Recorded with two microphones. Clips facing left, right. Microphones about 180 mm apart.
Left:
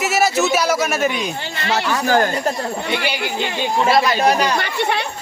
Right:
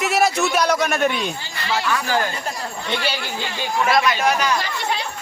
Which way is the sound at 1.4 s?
70° left (ahead or behind).